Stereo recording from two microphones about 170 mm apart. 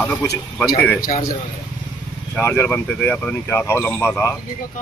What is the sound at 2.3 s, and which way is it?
Speech, 15° left (ahead or behind).